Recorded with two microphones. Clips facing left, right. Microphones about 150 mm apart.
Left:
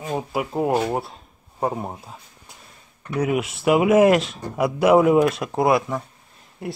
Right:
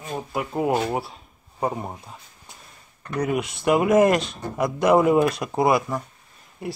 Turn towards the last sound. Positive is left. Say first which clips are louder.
# left 1 dB
turn(degrees=0)  # may be behind; listen again after turning